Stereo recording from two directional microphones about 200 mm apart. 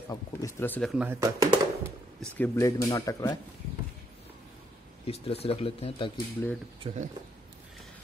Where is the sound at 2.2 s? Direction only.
10° left (ahead or behind).